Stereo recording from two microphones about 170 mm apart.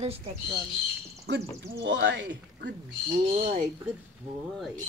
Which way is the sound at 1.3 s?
90° right.